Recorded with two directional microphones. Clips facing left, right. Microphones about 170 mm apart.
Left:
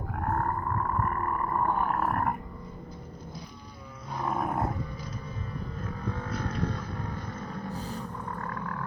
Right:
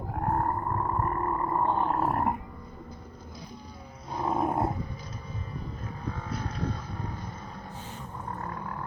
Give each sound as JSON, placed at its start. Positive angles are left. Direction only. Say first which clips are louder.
{"t": 0.1, "sound": "roaring cats", "louder": "right 2 dB", "side_deg": -30}
{"t": 4.3, "sound": "roar", "louder": "right 3 dB", "side_deg": -25}
{"t": 8.4, "sound": "a sound", "louder": "left 1 dB", "side_deg": -30}